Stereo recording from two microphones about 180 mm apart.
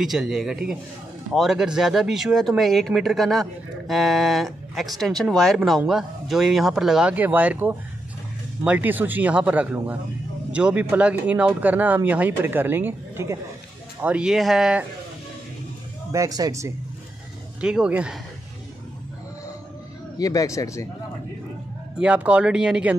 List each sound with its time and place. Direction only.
0.0 s speech: centre (ahead or behind)
16.1 s speech: 20° right (ahead or behind)
17.6 s speech: 5° right (ahead or behind)
20.2 s speech: 20° left (ahead or behind)
21.9 s speech: 5° right (ahead or behind)